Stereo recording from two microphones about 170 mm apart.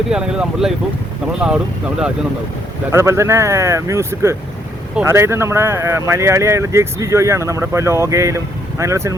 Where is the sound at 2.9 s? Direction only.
15° right (ahead or behind).